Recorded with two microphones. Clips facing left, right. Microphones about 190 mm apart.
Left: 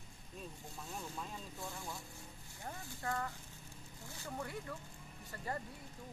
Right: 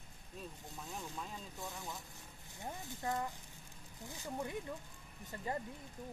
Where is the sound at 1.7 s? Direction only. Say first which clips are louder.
Even; 20° right (ahead or behind).